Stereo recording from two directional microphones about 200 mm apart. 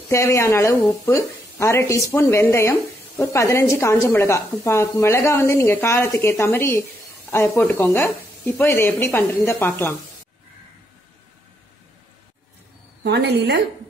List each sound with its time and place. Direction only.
0.1 s a woman's voice: 15° left (ahead or behind)
13.0 s a woman's voice: 60° right (ahead or behind)